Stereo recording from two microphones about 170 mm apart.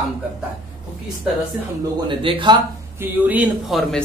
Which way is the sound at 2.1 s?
30° right (ahead or behind).